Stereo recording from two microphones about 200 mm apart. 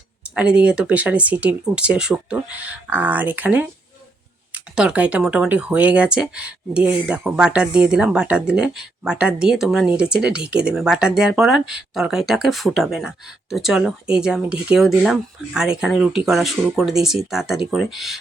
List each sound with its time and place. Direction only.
0.3 s speech: 5° right (ahead or behind)